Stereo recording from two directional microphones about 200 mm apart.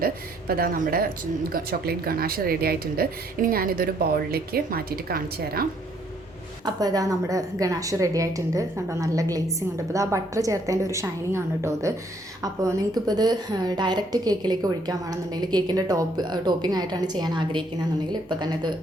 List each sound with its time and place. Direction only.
0.0 s a woman's voice: 50° right (ahead or behind)
6.7 s a woman's voice: 20° right (ahead or behind)